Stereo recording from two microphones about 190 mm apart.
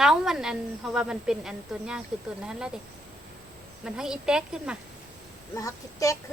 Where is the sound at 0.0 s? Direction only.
Centre (ahead or behind).